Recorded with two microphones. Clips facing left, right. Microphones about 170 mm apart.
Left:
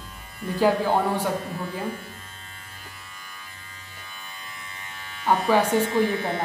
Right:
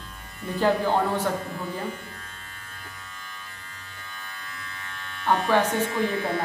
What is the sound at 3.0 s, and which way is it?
Electric shaver, 10° left (ahead or behind).